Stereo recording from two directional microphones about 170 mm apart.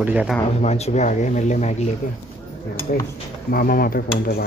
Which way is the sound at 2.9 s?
50° left (ahead or behind).